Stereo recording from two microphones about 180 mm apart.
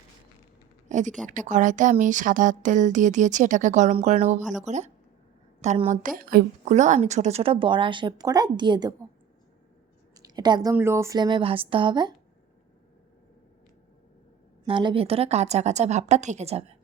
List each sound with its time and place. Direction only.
0.9 s a sound: 45° right (ahead or behind)
1.3 s a woman's voice: 45° right (ahead or behind)
6.0 s a woman's voice: 50° right (ahead or behind); by 8.9 s 25° right (ahead or behind)
10.2 s a woman's voice: 20° right (ahead or behind)
14.6 s a woman's voice: 25° right (ahead or behind)